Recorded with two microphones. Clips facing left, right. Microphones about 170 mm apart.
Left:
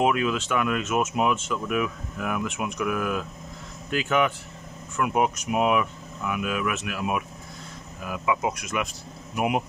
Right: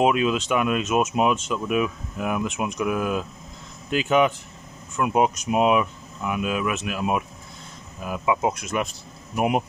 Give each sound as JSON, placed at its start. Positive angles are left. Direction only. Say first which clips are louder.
{"t": 0.0, "sound": "speech", "louder": "right 3 dB", "side_deg": -20}